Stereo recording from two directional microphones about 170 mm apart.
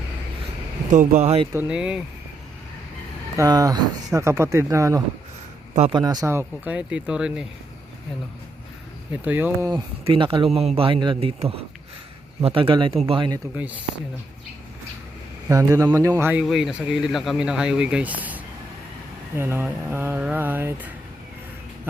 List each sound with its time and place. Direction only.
0.9 s speech: 45° right (ahead or behind)
1.5 s speech: 5° right (ahead or behind)
3.3 s speech: 20° right (ahead or behind)
9.2 s speech: 10° right (ahead or behind)
9.7 s speech: 30° right (ahead or behind)
15.4 s speech: 20° right (ahead or behind)